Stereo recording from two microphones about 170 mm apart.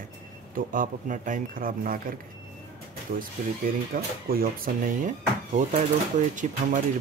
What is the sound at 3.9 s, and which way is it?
Speech, 60° right (ahead or behind).